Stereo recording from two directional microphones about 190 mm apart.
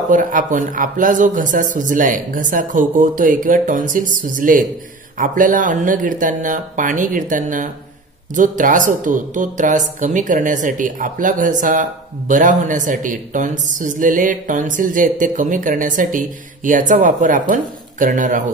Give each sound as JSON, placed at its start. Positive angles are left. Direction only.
{"t": 0.1, "sound": "a woman's voice", "side_deg": -45}